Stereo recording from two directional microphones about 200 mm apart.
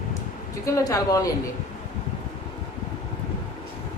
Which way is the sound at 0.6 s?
15° left (ahead or behind).